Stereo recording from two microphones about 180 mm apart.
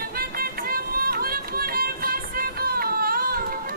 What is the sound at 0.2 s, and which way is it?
Music, 55° right (ahead or behind).